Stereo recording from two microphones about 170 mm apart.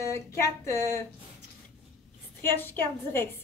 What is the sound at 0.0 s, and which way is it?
A woman's voice, 15° left (ahead or behind).